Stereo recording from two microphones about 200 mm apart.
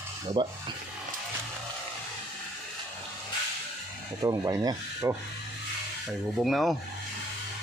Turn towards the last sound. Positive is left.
turn(degrees=0)  # may be behind; listen again after turning